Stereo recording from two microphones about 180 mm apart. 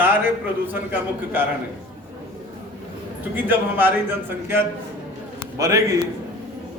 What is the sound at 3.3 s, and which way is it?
A man's voice, 10° right (ahead or behind).